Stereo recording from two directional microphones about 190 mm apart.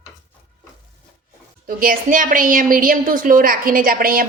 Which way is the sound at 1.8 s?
45° right (ahead or behind).